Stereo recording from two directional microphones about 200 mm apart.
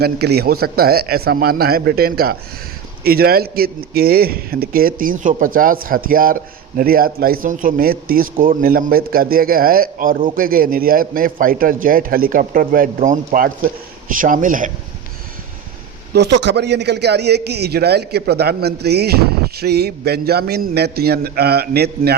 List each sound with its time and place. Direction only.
0.0 s a man's voice: 50° right (ahead or behind)
16.1 s a man's voice: 60° right (ahead or behind)